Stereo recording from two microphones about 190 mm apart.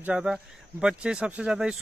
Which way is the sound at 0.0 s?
5° right (ahead or behind).